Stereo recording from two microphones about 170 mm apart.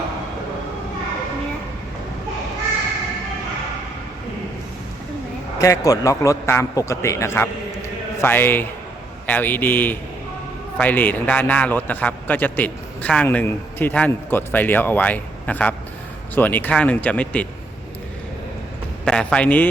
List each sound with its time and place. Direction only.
5.5 s a man's voice: 20° left (ahead or behind)
19.0 s a man's voice: 5° left (ahead or behind)